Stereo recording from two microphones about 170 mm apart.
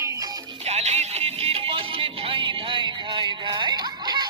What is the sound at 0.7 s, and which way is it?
Music, 40° right (ahead or behind).